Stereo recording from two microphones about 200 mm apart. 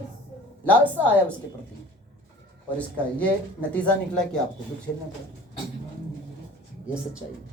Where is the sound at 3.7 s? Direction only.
5° left (ahead or behind).